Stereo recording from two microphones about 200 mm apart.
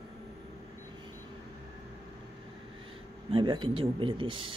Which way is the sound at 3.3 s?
25° right (ahead or behind).